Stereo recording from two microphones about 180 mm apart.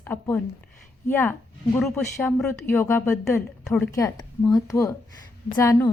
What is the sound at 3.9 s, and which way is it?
A woman's voice, 20° left (ahead or behind).